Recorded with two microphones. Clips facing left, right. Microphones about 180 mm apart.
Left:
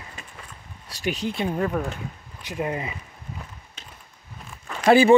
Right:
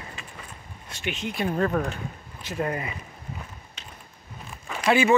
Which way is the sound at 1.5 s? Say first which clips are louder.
Right 4 dB; 10° left (ahead or behind).